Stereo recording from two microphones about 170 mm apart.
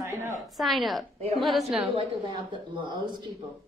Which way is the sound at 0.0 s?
15° right (ahead or behind).